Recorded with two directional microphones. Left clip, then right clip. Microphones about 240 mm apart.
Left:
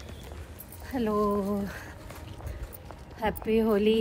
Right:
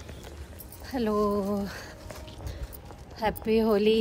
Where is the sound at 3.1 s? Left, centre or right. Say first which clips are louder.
Right 1 dB; centre.